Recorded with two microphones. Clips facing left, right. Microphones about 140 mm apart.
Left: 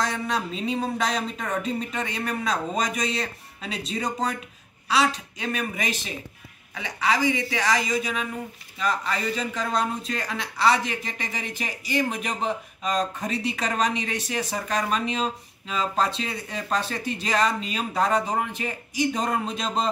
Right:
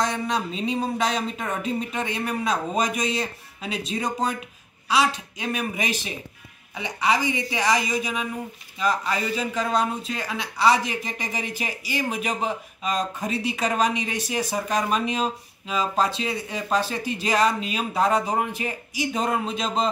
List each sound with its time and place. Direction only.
0.9 s speech: centre (ahead or behind)